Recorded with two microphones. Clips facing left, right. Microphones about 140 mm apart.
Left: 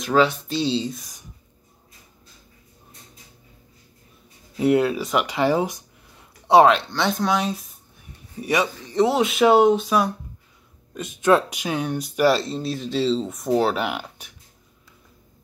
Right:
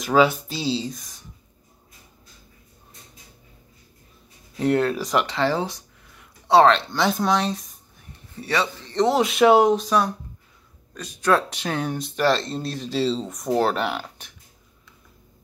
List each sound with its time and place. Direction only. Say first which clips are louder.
0.0 s speech: right 1 dB; 5° right (ahead or behind)
4.6 s speech: left 2 dB; 5° left (ahead or behind)
5.2 s a sound: left 2 dB; 15° left (ahead or behind)
6.9 s speech: right 1 dB; centre (ahead or behind)
11.0 s speech: left 3 dB; 20° left (ahead or behind)
11.5 s speech: left 1 dB; 5° left (ahead or behind)